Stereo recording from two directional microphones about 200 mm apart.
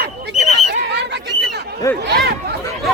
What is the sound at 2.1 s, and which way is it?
Chatter, 55° right (ahead or behind).